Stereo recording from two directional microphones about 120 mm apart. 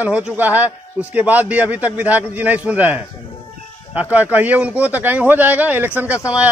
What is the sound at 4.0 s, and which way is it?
A man's voice, 10° right (ahead or behind).